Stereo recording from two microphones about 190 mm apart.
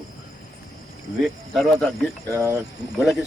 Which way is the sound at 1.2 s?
Centre (ahead or behind).